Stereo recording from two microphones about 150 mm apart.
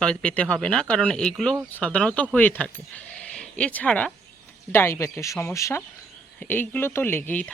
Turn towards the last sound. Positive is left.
turn(degrees=10)  # may be behind; listen again after turning